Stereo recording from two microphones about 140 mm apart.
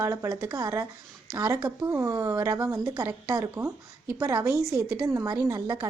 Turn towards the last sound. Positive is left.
turn(degrees=-25)  # may be behind; listen again after turning